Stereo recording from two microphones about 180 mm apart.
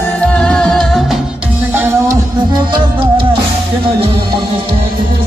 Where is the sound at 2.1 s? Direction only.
25° right (ahead or behind).